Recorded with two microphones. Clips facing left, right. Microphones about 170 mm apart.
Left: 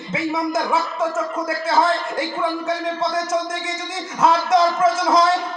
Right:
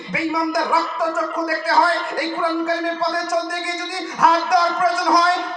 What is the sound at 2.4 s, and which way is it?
A man's voice, 20° left (ahead or behind).